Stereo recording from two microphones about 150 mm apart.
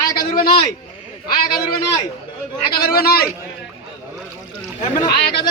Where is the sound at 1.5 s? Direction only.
85° left.